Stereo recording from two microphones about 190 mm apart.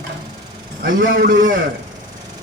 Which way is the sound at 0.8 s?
45° right (ahead or behind).